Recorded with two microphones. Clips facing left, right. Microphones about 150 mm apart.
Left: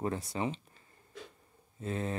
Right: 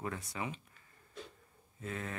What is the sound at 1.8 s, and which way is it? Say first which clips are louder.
Speech: left 6 dB; 30° left (ahead or behind).